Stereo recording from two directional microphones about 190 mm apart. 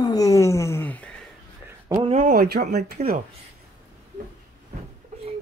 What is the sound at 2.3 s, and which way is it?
Speech, 55° right (ahead or behind).